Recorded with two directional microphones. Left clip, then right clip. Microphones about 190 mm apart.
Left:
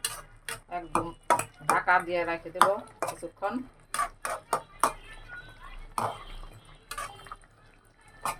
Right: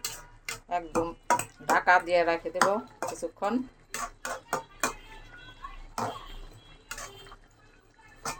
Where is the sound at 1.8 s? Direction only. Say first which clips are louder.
Right 6 dB; 35° right (ahead or behind).